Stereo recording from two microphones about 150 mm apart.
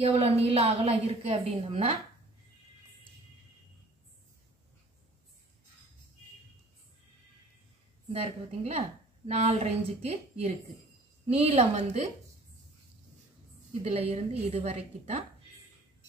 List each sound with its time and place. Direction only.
0.0 s a woman's voice: 40° right (ahead or behind)
8.1 s a woman's voice: 40° right (ahead or behind)
13.8 s a woman's voice: 40° right (ahead or behind)